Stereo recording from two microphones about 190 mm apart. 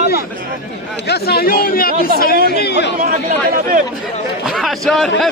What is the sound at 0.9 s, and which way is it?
Speech, 60° left (ahead or behind).